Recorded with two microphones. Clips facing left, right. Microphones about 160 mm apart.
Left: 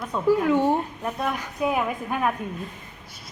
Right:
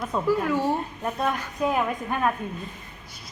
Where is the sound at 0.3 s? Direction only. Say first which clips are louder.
Left 5 dB; 15° left (ahead or behind).